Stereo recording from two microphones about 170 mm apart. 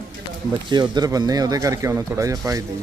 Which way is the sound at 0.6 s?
25° right (ahead or behind).